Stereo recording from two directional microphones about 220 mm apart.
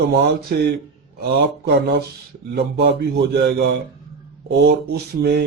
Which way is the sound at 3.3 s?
50° right (ahead or behind).